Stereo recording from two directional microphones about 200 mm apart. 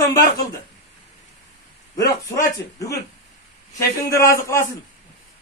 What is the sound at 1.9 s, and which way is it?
A man's voice, 15° left (ahead or behind).